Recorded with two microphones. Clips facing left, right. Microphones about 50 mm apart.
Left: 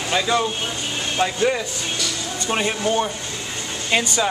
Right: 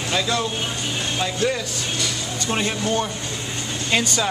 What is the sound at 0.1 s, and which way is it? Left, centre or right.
Speech, centre.